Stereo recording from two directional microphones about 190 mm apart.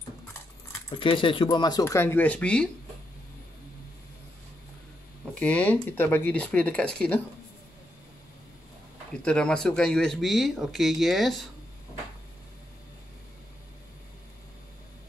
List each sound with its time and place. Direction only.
0.8 s speech: 25° left (ahead or behind); by 2.7 s 5° left (ahead or behind)
5.4 s speech: 5° left (ahead or behind)
9.1 s speech: 5° left (ahead or behind)